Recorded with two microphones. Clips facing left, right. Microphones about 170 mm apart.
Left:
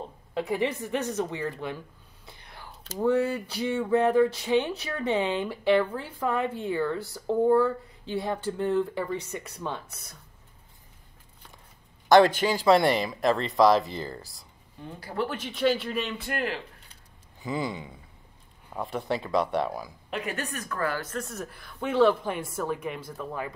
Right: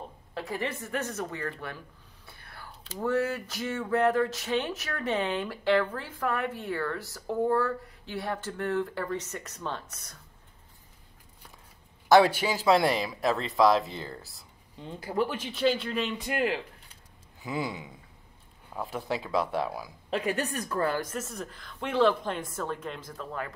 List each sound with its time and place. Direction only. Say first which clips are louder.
0.3 s speech: left 6 dB; 20° left (ahead or behind)
2.2 s whispering: left 2 dB; 20° left (ahead or behind)
3.0 s speech: left 4 dB; 15° left (ahead or behind)
12.1 s speech: left 2 dB; 5° right (ahead or behind)
15.0 s speech: right 2 dB; 15° right (ahead or behind)
15.6 s speech: left 1 dB; centre (ahead or behind)
16.2 s speech: right 2 dB; 15° right (ahead or behind)
20.1 s a woman's voice: right 4 dB; 35° right (ahead or behind)
21.1 s speech: left 2 dB; centre (ahead or behind); by 23.5 s 15° left (ahead or behind)